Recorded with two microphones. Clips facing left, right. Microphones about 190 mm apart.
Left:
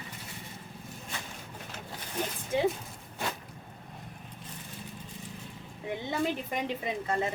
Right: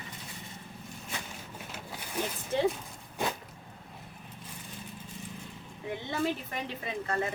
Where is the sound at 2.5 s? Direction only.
15° left (ahead or behind).